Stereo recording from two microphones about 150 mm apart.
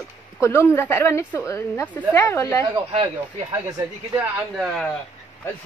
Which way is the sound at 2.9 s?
40° right (ahead or behind).